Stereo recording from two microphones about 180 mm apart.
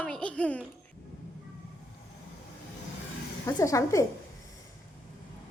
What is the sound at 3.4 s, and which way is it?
Speech, 15° left (ahead or behind).